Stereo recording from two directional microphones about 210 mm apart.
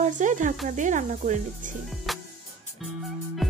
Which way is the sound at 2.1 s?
Centre (ahead or behind).